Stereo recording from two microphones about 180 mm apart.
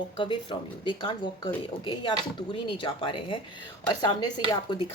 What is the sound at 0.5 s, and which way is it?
A woman's voice, 25° left (ahead or behind).